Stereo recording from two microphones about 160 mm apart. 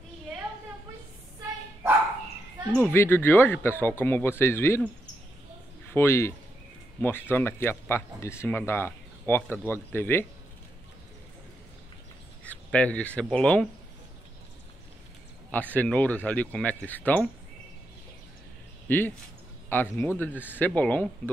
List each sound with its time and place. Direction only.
2.6 s speech: 15° right (ahead or behind)
2.9 s speech: 15° left (ahead or behind)
5.9 s speech: 15° left (ahead or behind)
12.4 s speech: 10° left (ahead or behind)
15.5 s speech: 10° left (ahead or behind)
18.9 s speech: 10° left (ahead or behind)